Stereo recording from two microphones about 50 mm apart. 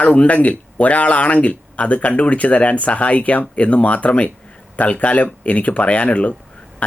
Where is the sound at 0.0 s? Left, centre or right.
Left.